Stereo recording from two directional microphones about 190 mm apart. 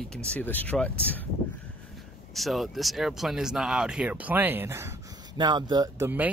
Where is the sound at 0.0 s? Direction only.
5° left (ahead or behind).